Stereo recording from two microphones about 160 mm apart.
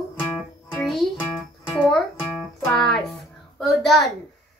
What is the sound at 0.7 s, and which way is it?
Music, centre (ahead or behind).